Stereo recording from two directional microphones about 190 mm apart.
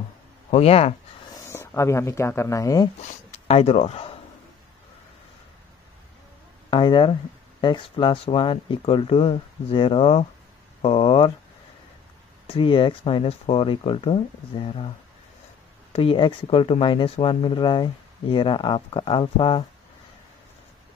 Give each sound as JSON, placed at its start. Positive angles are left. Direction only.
{"t": 0.5, "sound": "speech", "side_deg": 30}
{"t": 1.3, "sound": "speech", "side_deg": 15}
{"t": 3.0, "sound": "speech", "side_deg": 30}
{"t": 6.7, "sound": "speech", "side_deg": 25}
{"t": 12.4, "sound": "speech", "side_deg": 25}
{"t": 15.9, "sound": "speech", "side_deg": 30}